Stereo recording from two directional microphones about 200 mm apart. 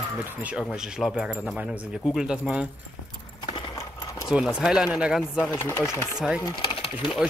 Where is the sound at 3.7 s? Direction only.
15° left (ahead or behind).